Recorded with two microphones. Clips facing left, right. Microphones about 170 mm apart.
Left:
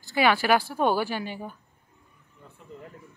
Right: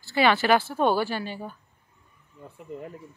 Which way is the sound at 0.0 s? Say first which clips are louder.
Right 1 dB; 10° left (ahead or behind).